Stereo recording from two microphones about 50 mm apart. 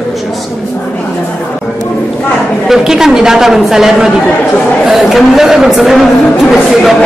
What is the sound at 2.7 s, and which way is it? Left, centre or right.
A man's voice, centre.